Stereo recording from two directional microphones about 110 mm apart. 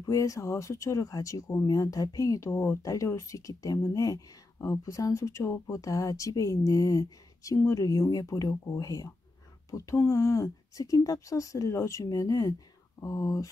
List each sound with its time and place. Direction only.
0.0 s speech: 30° left (ahead or behind)